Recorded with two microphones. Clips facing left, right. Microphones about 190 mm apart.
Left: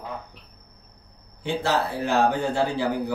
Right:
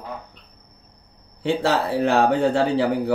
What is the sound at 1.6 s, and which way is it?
Speech, 65° right (ahead or behind).